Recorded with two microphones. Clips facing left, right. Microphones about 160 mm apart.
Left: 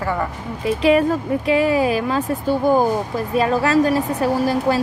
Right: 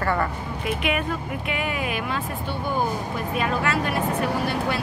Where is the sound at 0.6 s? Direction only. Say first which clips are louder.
Left 10 dB; 35° left (ahead or behind).